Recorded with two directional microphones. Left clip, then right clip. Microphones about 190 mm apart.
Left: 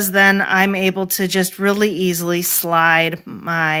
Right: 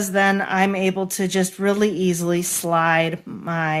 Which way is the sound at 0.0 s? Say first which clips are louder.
Left 5 dB; 40° left (ahead or behind).